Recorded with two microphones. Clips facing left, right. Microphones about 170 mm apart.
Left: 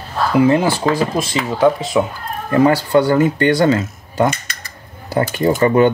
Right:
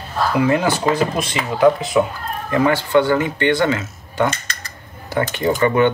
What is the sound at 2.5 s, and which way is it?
Speech, 35° left (ahead or behind).